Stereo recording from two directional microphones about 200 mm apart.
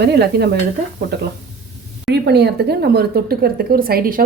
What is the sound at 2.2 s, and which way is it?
A woman's voice, 55° right (ahead or behind).